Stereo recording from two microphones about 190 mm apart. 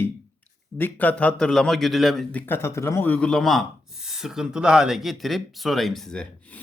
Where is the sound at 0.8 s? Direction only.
10° left (ahead or behind).